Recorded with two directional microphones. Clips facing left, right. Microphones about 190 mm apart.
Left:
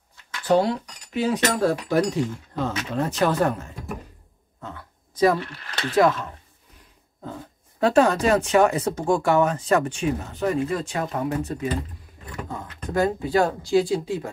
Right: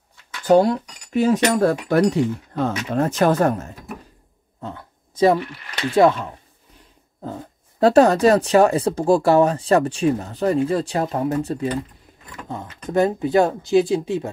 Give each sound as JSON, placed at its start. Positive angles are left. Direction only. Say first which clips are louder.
{"t": 0.5, "sound": "speech", "louder": "right 5 dB", "side_deg": -50}
{"t": 4.6, "sound": "a sound", "louder": "right 5 dB", "side_deg": -30}
{"t": 5.4, "sound": "speech", "louder": "right 4 dB", "side_deg": -10}
{"t": 7.8, "sound": "speech", "louder": "right 5 dB", "side_deg": -40}
{"t": 12.9, "sound": "speech", "louder": "right 4 dB", "side_deg": -20}